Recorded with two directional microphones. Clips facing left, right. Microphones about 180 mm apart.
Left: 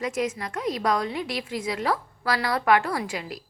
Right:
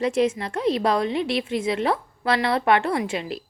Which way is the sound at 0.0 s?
30° right (ahead or behind).